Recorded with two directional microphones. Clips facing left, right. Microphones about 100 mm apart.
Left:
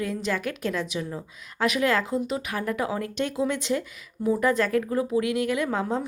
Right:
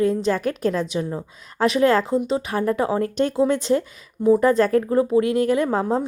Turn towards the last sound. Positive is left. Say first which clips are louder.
# right 6 dB
turn(degrees=-35)  # may be behind; listen again after turning